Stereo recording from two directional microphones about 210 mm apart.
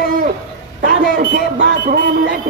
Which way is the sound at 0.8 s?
45° right (ahead or behind).